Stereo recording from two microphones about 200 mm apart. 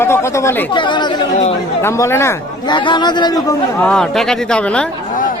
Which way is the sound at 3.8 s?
Centre (ahead or behind).